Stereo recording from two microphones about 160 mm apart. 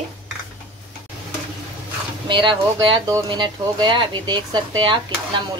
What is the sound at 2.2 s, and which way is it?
Speech, 30° right (ahead or behind).